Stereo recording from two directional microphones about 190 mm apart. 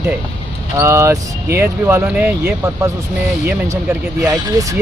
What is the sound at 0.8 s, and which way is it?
Speech, 15° right (ahead or behind).